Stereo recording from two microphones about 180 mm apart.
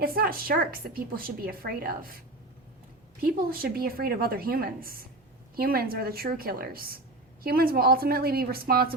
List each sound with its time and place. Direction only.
0.0 s a woman's voice: 55° right (ahead or behind)
3.2 s a woman's voice: 55° right (ahead or behind)